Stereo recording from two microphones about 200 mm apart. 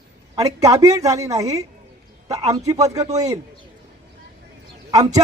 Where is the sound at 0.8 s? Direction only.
15° right (ahead or behind).